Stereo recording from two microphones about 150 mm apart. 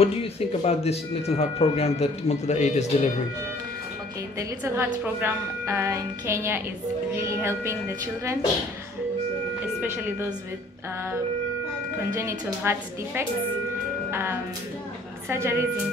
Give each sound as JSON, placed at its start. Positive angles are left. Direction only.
{"t": 0.0, "sound": "speech", "side_deg": 40}
{"t": 4.4, "sound": "a woman's voice", "side_deg": -20}
{"t": 12.1, "sound": "a woman's voice", "side_deg": -20}